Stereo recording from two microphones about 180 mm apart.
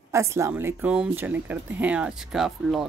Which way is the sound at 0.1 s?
15° right (ahead or behind).